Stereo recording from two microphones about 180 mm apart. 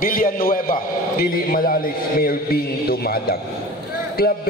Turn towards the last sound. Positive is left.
turn(degrees=55)  # may be behind; listen again after turning